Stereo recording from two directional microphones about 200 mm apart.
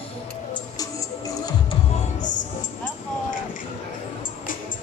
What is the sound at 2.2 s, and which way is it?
Music, 40° left (ahead or behind).